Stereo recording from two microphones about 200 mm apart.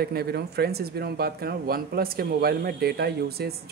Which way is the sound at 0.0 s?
50° right (ahead or behind).